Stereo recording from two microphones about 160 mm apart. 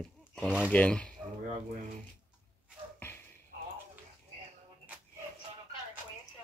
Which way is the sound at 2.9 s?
10° left (ahead or behind).